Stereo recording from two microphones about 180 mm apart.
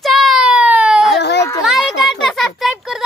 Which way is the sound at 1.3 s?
15° left (ahead or behind).